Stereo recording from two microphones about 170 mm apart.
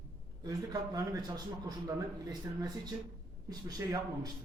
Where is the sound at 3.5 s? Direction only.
20° right (ahead or behind).